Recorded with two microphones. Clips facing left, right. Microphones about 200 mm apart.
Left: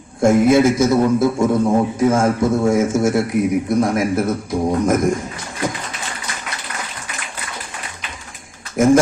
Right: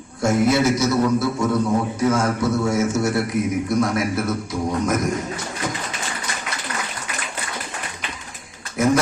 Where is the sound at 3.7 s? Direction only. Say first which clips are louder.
Left 2 dB; 30° left (ahead or behind).